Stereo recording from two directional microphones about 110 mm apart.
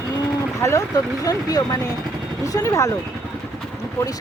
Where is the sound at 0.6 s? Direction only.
25° left (ahead or behind).